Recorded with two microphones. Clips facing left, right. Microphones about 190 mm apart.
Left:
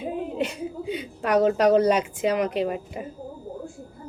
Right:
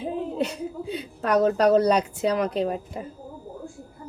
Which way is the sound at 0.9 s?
10° left (ahead or behind).